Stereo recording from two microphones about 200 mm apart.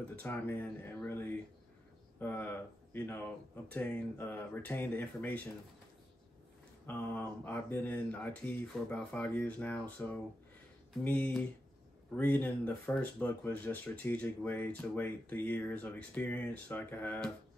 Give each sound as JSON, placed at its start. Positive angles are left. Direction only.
{"t": 0.1, "sound": "speech", "side_deg": 10}
{"t": 6.9, "sound": "speech", "side_deg": 10}